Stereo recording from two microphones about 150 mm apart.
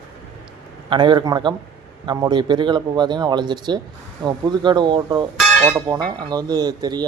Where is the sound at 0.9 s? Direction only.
35° right (ahead or behind).